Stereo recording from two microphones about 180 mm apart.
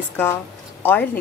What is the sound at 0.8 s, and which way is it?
Speech, 10° left (ahead or behind).